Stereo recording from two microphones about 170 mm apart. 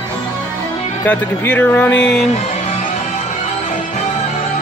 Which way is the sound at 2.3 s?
40° left (ahead or behind).